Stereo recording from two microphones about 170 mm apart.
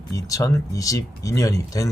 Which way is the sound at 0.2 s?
20° left (ahead or behind).